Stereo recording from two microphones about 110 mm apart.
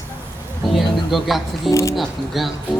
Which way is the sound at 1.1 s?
Centre (ahead or behind).